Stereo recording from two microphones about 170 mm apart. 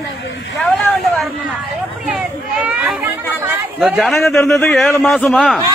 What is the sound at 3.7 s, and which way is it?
A man's voice, centre (ahead or behind).